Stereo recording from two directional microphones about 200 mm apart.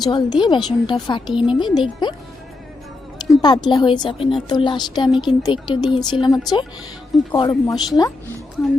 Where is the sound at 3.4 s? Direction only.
20° left (ahead or behind).